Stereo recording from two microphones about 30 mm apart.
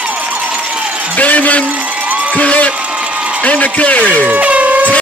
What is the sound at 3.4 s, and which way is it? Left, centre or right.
Speech, left.